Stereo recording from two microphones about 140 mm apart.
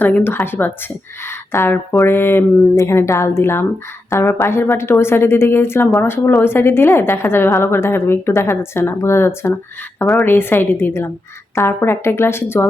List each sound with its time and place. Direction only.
0.0 s a woman's voice: 15° left (ahead or behind)